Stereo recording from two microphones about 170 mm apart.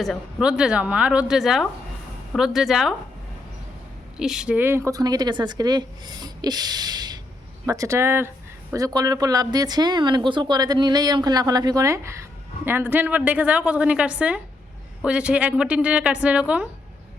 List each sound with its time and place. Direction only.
0.0 s a woman's voice: centre (ahead or behind)
4.2 s a woman's voice: 5° right (ahead or behind)